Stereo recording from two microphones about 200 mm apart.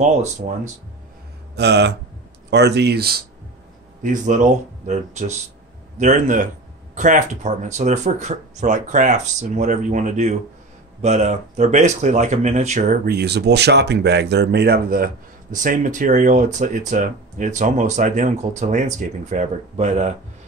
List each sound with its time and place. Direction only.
1.5 s speech: 55° right (ahead or behind)
4.0 s speech: 40° right (ahead or behind)